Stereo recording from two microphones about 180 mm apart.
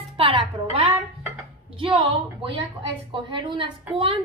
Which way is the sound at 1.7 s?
30° right (ahead or behind).